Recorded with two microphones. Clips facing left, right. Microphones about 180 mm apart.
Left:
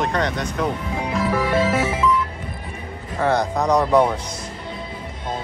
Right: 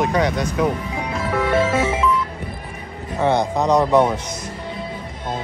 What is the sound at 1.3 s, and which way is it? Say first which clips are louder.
Music: right 2 dB; 25° right (ahead or behind).